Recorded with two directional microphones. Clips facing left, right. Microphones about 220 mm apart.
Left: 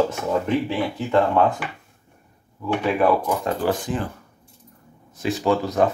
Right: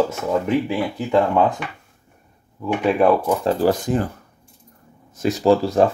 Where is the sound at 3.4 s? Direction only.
35° right (ahead or behind).